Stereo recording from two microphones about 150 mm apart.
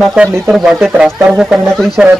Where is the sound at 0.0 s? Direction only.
5° right (ahead or behind).